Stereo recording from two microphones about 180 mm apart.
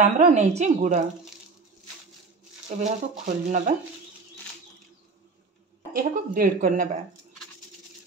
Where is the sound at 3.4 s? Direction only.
45° right (ahead or behind).